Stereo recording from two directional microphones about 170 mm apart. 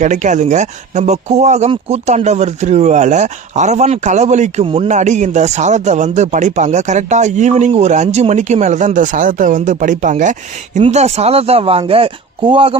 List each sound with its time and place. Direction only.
0.0 s speech: 45° right (ahead or behind); by 12.7 s 30° right (ahead or behind)